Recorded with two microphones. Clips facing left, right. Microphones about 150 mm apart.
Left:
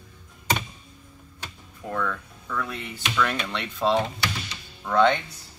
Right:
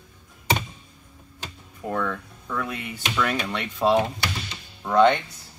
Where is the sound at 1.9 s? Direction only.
20° right (ahead or behind).